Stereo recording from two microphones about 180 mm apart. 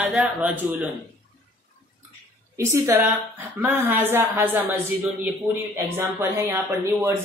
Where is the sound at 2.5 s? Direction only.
15° right (ahead or behind).